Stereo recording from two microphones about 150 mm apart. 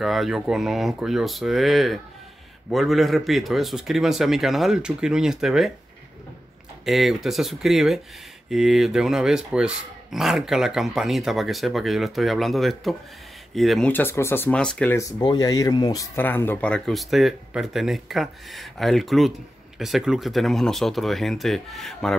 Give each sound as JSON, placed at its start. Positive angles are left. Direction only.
{"t": 0.0, "sound": "speech", "side_deg": 0}
{"t": 6.8, "sound": "speech", "side_deg": 0}
{"t": 15.0, "sound": "speech", "side_deg": 25}
{"t": 16.2, "sound": "speech", "side_deg": 15}